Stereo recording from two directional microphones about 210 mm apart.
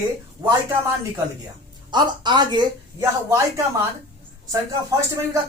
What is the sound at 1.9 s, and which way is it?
Speech, 20° right (ahead or behind).